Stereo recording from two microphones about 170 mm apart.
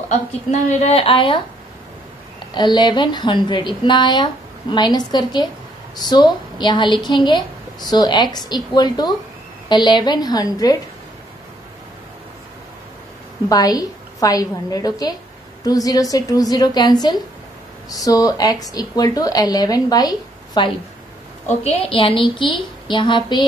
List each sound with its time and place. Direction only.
0.1 s a woman's voice: 45° left (ahead or behind)
2.5 s speech: 25° left (ahead or behind)
13.5 s speech: 20° left (ahead or behind)